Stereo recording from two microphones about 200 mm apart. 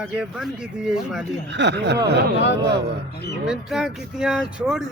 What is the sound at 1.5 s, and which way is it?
Speech, 60° right (ahead or behind).